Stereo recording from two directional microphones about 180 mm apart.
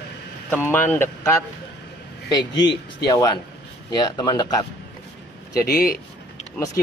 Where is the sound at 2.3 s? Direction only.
25° left (ahead or behind).